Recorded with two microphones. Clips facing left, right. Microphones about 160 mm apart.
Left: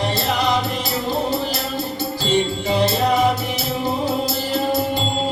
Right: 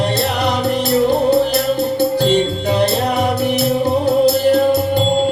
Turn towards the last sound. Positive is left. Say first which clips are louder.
# right 10 dB
turn(degrees=-65)  # may be behind; listen again after turning